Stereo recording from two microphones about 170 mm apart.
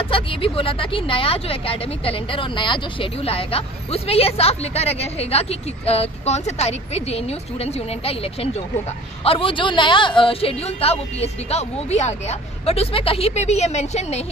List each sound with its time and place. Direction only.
0.0 s speech: 30° left (ahead or behind)